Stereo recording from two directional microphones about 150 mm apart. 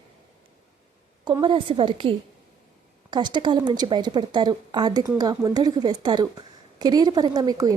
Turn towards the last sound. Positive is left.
turn(degrees=-25)  # may be behind; listen again after turning